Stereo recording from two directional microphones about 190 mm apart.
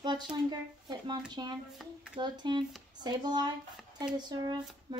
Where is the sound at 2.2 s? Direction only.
25° right (ahead or behind).